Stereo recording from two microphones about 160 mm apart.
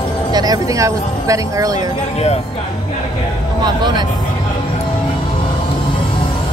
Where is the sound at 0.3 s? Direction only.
25° right (ahead or behind).